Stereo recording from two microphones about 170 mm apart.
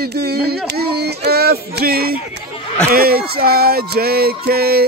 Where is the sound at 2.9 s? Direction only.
60° right (ahead or behind).